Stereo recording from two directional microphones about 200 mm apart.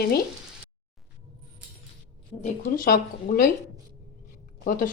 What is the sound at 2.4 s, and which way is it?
Speech, 45° left (ahead or behind).